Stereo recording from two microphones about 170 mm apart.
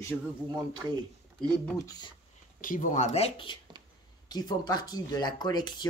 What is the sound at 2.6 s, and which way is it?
Speech, 50° left (ahead or behind).